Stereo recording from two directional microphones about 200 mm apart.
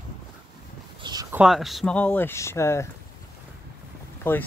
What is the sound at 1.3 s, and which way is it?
Speech, centre (ahead or behind).